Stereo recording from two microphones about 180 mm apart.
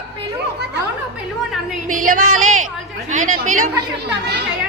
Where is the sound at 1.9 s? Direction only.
50° right (ahead or behind).